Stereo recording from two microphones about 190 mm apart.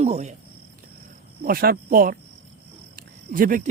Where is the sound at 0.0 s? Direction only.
35° right (ahead or behind).